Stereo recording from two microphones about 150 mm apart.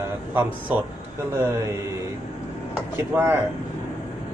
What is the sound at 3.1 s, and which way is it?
Speech, 15° right (ahead or behind).